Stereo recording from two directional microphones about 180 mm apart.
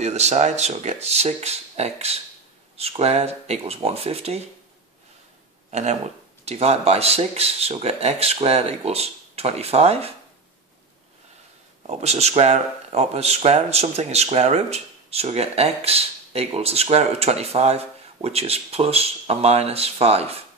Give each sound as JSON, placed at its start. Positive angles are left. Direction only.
{"t": 0.0, "sound": "speech", "side_deg": -40}
{"t": 5.7, "sound": "speech", "side_deg": -40}
{"t": 11.9, "sound": "speech", "side_deg": -35}